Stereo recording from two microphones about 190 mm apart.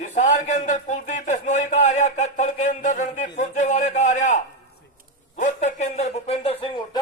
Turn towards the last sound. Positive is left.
turn(degrees=25)  # may be behind; listen again after turning